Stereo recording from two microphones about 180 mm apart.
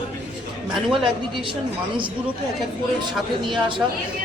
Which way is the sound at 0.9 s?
30° right (ahead or behind).